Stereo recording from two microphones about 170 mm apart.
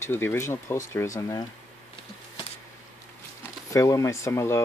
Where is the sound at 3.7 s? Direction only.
20° left (ahead or behind).